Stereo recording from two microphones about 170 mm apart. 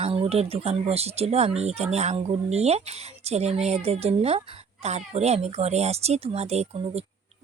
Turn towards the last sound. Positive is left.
turn(degrees=-40)  # may be behind; listen again after turning